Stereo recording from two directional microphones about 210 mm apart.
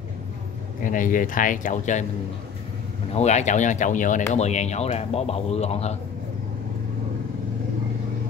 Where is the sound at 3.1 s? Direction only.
30° left (ahead or behind).